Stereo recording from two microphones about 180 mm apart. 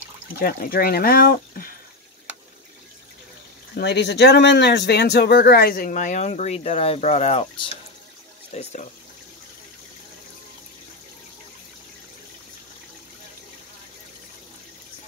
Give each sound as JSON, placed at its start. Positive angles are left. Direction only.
{"t": 0.4, "sound": "speech", "side_deg": 55}
{"t": 3.7, "sound": "speech", "side_deg": 70}